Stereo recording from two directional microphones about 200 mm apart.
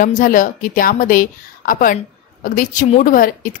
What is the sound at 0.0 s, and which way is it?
A woman's voice, 40° left (ahead or behind).